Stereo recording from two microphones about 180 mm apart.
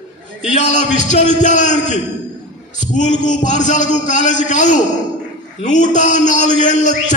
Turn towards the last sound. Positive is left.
turn(degrees=45)  # may be behind; listen again after turning